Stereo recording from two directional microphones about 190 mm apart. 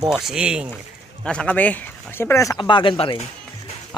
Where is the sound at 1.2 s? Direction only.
5° left (ahead or behind); by 3.3 s 30° left (ahead or behind).